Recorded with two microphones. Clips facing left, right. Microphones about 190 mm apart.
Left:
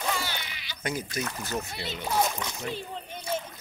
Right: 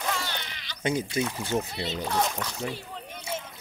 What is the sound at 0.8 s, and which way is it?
Speech, 25° right (ahead or behind).